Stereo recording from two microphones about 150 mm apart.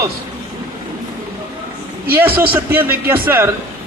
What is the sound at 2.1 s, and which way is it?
Speech, 15° right (ahead or behind).